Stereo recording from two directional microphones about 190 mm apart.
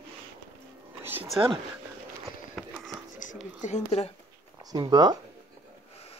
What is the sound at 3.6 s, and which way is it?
Speech, 35° left (ahead or behind).